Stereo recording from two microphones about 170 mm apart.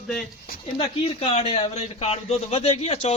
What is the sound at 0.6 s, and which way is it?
Speech, 35° left (ahead or behind).